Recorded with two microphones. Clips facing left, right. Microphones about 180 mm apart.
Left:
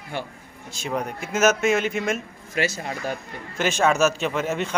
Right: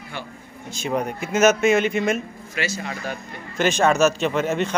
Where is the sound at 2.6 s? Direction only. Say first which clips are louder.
Left 2 dB; 40° left (ahead or behind).